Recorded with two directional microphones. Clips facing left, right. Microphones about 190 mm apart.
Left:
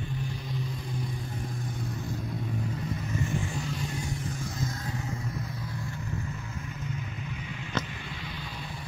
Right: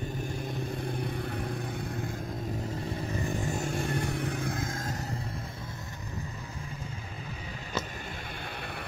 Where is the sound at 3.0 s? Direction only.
35° right (ahead or behind).